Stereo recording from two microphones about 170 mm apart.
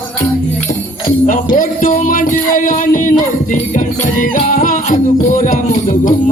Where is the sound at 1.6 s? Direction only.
50° left (ahead or behind).